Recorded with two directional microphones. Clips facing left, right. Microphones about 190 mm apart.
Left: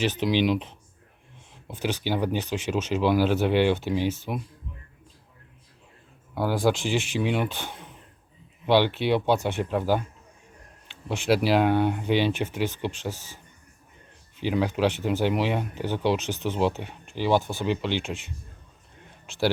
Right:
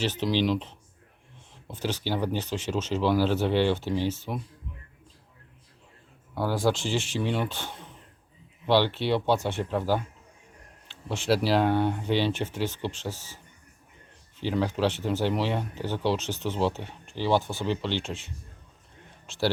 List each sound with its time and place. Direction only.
0.0 s speech: 15° left (ahead or behind)
6.3 s a man's voice: 15° left (ahead or behind)